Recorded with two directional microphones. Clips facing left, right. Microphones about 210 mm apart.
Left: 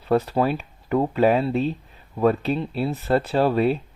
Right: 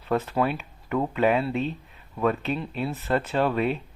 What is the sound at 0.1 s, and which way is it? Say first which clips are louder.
Speech: left 4 dB; 35° left (ahead or behind).